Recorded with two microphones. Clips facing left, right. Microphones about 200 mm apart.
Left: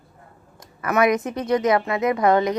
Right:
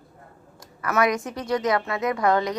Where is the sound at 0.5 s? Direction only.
20° left (ahead or behind).